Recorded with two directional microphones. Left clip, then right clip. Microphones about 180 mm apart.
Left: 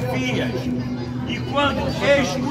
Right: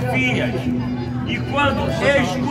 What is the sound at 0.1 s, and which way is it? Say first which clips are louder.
Speech: right 6 dB; 15° right (ahead or behind).